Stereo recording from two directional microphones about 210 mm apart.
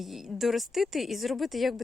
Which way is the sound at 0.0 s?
Centre (ahead or behind).